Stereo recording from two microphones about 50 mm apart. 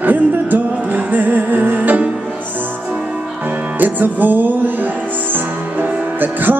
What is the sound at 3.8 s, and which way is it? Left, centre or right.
Music, right.